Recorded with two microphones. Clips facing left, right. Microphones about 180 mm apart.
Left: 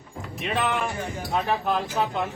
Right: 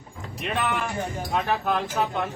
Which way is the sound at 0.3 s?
Centre (ahead or behind).